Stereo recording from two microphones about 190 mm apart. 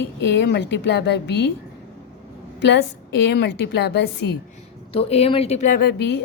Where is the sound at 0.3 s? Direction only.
65° left (ahead or behind).